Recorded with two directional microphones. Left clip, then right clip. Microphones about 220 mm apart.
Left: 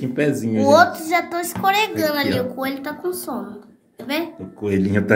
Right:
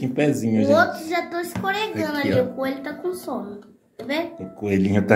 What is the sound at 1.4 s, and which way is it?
Speech, 45° left (ahead or behind).